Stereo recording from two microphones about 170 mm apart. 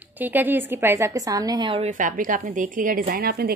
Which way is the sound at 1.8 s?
50° right (ahead or behind).